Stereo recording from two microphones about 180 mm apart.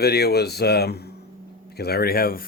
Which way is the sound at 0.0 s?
60° left (ahead or behind).